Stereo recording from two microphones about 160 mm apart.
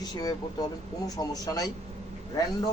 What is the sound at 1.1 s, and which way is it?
Speech, 25° left (ahead or behind).